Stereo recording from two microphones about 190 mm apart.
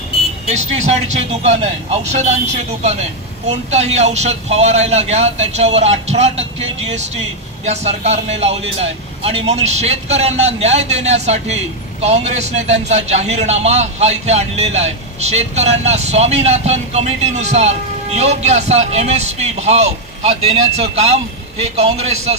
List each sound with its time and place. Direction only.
1.4 s speech: 35° right (ahead or behind)